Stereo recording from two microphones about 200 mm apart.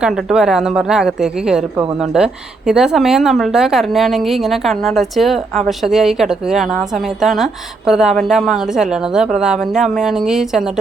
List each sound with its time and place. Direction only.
0.0 s a woman's voice: centre (ahead or behind)